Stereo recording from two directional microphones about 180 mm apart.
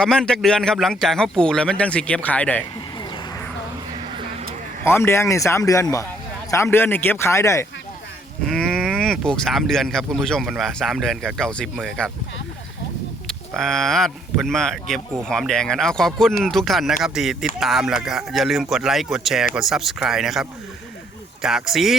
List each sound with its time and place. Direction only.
0.0 s speech: 5° left (ahead or behind)
4.8 s speech: 15° left (ahead or behind)
8.4 s speech: centre (ahead or behind)
13.2 s speech: centre (ahead or behind)